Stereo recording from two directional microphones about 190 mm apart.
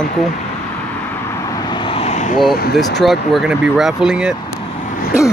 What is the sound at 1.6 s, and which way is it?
Vehicle, 25° left (ahead or behind).